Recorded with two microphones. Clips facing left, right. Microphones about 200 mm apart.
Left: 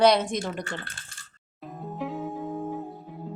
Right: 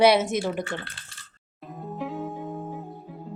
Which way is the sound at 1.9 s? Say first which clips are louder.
Even; centre (ahead or behind).